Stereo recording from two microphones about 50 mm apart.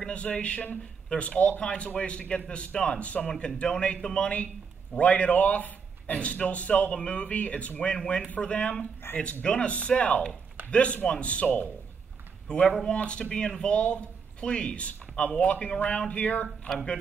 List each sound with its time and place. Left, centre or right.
0.0 s a man's voice: left
1.0 s a sound: left
1.6 s a man's voice: left
16.7 s speech: centre